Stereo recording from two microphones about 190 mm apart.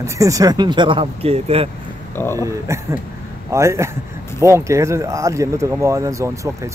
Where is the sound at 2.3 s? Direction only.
15° right (ahead or behind).